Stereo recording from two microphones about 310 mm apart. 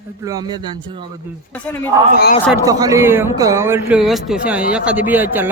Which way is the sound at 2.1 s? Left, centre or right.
Left.